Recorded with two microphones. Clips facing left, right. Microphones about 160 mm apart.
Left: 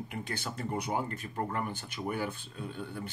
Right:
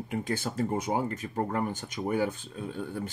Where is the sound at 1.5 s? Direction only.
40° right (ahead or behind).